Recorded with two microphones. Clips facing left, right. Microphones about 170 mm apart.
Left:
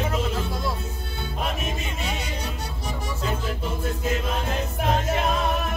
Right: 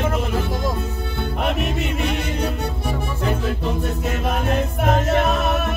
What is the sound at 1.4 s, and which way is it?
Music, 65° right (ahead or behind).